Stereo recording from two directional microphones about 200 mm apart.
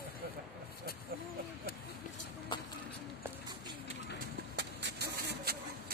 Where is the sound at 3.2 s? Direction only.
20° right (ahead or behind).